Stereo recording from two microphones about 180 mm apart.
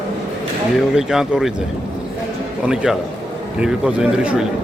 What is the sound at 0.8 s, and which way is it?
Speech, 5° right (ahead or behind).